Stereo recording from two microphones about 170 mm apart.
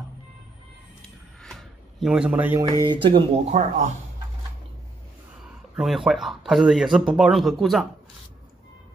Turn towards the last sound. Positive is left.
turn(degrees=0)  # may be behind; listen again after turning